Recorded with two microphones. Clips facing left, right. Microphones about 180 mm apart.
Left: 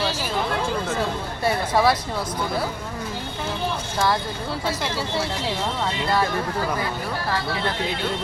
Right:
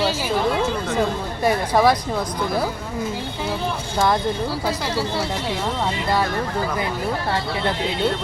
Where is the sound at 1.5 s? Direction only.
15° right (ahead or behind).